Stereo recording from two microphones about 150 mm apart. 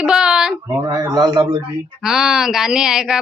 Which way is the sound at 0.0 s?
5° right (ahead or behind).